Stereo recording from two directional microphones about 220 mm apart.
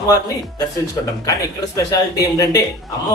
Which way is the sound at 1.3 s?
15° left (ahead or behind).